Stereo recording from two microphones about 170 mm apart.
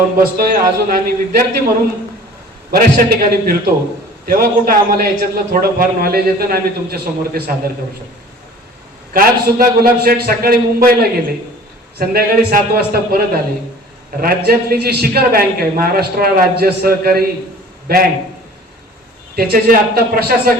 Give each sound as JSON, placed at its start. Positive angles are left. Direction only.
{"t": 0.2, "sound": "a man's voice", "side_deg": -60}
{"t": 2.7, "sound": "a man's voice", "side_deg": -60}
{"t": 9.1, "sound": "a man's voice", "side_deg": -60}
{"t": 19.4, "sound": "a man's voice", "side_deg": -65}